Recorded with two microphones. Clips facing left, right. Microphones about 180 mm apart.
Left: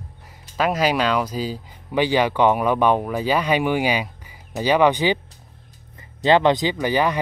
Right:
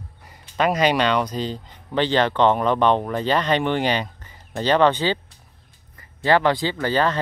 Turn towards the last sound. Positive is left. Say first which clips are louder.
# left 1 dB
turn(degrees=15)  # may be behind; listen again after turning